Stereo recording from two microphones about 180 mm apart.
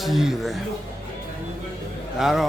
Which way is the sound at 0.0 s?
Centre (ahead or behind).